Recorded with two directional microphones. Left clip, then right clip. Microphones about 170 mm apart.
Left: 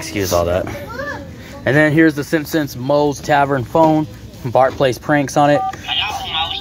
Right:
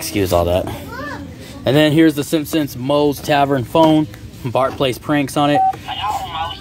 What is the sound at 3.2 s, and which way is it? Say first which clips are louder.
Speech: left 1 dB; 10° right (ahead or behind).